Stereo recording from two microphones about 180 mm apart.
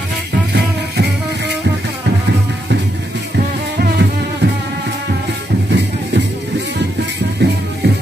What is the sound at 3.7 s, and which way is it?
Music, 65° right (ahead or behind).